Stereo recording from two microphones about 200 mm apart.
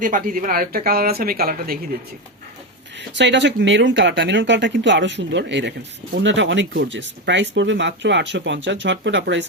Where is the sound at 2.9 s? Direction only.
65° right (ahead or behind).